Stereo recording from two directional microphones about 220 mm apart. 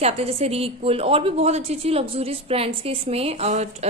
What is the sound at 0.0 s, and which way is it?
A woman's voice, 25° right (ahead or behind).